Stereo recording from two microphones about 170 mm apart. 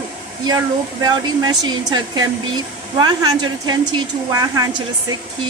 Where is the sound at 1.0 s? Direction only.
25° right (ahead or behind).